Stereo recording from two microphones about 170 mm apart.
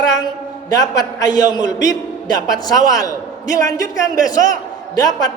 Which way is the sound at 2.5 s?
20° left (ahead or behind).